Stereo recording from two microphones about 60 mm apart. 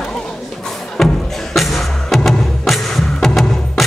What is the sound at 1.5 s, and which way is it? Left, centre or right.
Music, centre.